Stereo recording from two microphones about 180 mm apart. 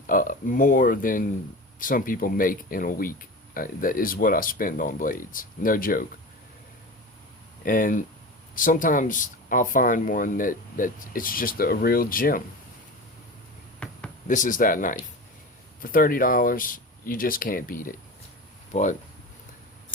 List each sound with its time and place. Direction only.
0.1 s speech: 50° left (ahead or behind)
7.6 s speech: 50° left (ahead or behind)
13.7 s a sound: 5° left (ahead or behind)
14.3 s speech: 45° left (ahead or behind)